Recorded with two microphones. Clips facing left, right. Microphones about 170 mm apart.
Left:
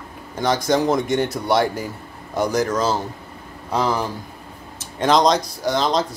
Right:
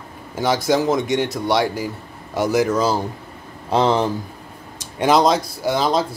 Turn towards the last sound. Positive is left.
turn(degrees=-5)  # may be behind; listen again after turning